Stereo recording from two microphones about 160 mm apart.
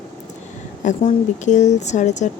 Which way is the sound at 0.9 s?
50° left (ahead or behind).